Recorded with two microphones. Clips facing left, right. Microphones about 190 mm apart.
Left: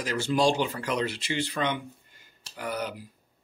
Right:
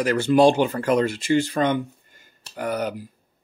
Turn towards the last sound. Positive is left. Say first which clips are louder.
# right 7 dB
turn(degrees=-50)  # may be behind; listen again after turning